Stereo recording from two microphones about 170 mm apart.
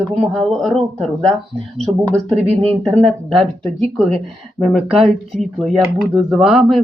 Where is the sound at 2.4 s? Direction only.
40° right (ahead or behind).